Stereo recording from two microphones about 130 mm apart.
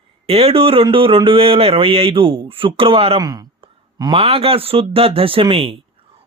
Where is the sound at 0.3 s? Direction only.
50° right (ahead or behind).